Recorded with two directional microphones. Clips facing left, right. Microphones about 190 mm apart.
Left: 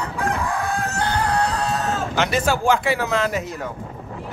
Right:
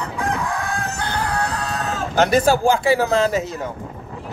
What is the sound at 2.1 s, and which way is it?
Speech, 40° right (ahead or behind).